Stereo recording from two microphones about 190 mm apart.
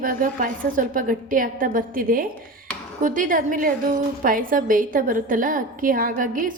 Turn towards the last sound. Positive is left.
turn(degrees=-45)  # may be behind; listen again after turning